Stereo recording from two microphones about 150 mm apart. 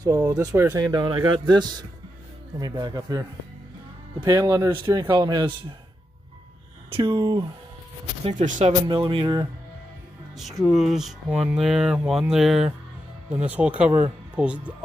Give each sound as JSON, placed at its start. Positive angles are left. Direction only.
{"t": 0.0, "sound": "speech", "side_deg": -20}
{"t": 5.1, "sound": "speech", "side_deg": -30}
{"t": 6.9, "sound": "speech", "side_deg": -30}
{"t": 8.3, "sound": "speech", "side_deg": -55}
{"t": 8.8, "sound": "speech", "side_deg": -35}
{"t": 10.3, "sound": "speech", "side_deg": 0}